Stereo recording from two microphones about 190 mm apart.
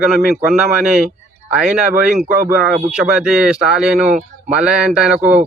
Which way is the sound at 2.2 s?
45° right (ahead or behind).